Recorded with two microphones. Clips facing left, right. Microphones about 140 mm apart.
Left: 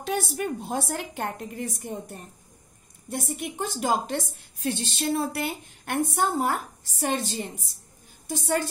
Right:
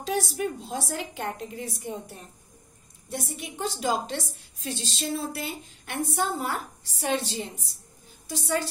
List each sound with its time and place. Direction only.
0.0 s a woman's voice: 60° left (ahead or behind)